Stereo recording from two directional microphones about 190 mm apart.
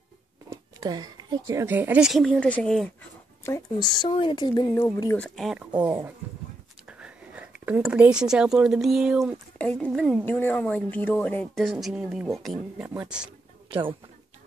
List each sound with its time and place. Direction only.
0.5 s speech: 20° right (ahead or behind); by 3.1 s 5° left (ahead or behind)
3.4 s speech: 20° left (ahead or behind)
4.8 s speech: 10° left (ahead or behind)
5.9 s speech: 10° right (ahead or behind)
9.6 s a sound: 5° left (ahead or behind)
9.9 s a woman's voice: 5° left (ahead or behind)
13.7 s speech: 25° right (ahead or behind)